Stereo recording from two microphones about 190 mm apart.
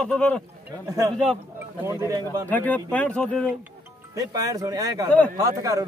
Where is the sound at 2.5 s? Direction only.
10° left (ahead or behind).